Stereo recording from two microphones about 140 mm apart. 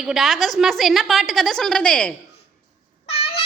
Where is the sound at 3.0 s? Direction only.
45° left (ahead or behind).